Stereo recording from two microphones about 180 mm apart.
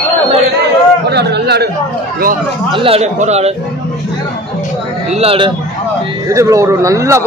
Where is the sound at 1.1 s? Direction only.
65° right (ahead or behind).